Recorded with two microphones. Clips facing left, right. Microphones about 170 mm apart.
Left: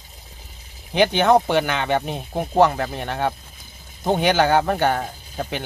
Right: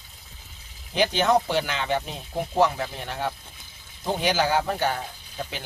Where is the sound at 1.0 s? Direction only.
60° left (ahead or behind).